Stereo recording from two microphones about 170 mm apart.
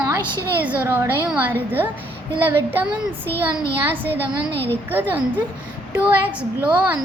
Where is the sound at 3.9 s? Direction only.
10° right (ahead or behind).